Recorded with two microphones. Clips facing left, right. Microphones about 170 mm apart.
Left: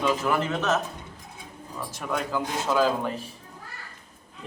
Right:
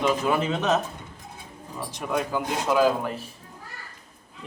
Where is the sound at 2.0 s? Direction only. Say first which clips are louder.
Right 2 dB; 15° right (ahead or behind).